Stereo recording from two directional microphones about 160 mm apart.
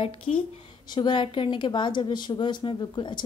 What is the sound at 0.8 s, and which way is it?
A woman's voice, 30° left (ahead or behind).